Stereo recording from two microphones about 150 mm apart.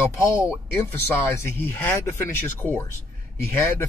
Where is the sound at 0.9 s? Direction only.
15° left (ahead or behind).